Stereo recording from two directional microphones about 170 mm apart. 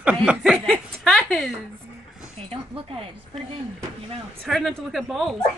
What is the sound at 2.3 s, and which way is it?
Speech, 35° right (ahead or behind).